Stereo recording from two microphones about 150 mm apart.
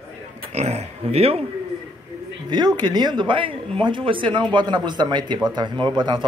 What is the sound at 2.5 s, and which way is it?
A man's voice, 30° right (ahead or behind).